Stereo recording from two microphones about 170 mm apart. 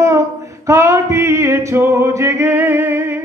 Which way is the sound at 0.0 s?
15° right (ahead or behind).